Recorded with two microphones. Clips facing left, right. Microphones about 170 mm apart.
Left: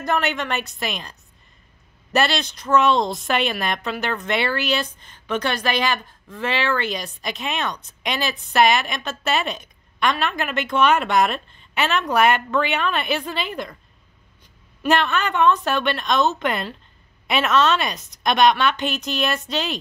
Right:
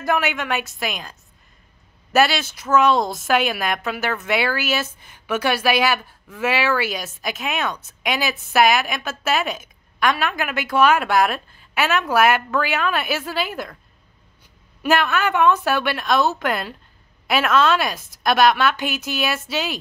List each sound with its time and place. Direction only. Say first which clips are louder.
0.0 s a woman's voice: right 1 dB; 5° right (ahead or behind)
2.1 s a woman's voice: right 3 dB; 5° right (ahead or behind)
14.8 s a woman's voice: right 1 dB; centre (ahead or behind)